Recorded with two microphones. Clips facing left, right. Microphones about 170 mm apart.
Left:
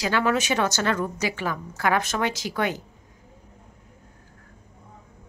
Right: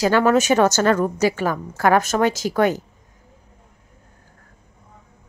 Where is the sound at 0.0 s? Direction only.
45° right (ahead or behind).